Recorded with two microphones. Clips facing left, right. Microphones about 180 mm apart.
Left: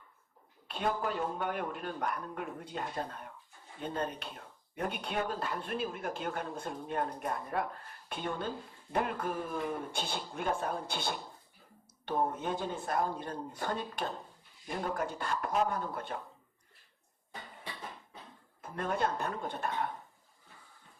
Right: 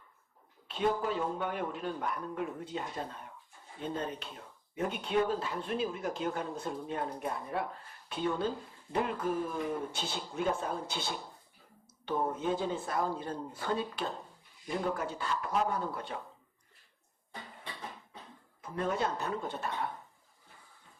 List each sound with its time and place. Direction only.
0.7 s speech: 55° left (ahead or behind)
18.6 s speech: 55° left (ahead or behind)